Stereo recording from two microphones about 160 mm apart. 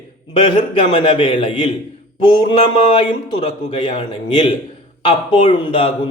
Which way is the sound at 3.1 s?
45° left (ahead or behind).